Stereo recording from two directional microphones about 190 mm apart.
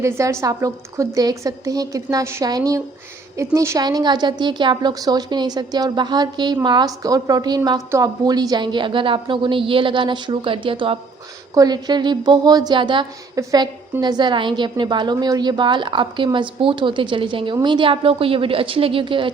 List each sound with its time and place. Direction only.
0.0 s a woman's voice: 15° right (ahead or behind)